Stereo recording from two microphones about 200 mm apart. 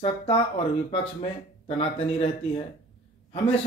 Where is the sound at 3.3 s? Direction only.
30° left (ahead or behind).